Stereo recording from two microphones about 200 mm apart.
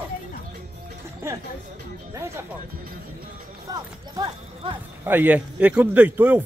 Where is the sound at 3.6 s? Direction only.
20° right (ahead or behind).